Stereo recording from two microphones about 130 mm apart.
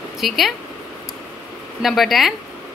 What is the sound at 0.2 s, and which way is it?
Speech, centre (ahead or behind).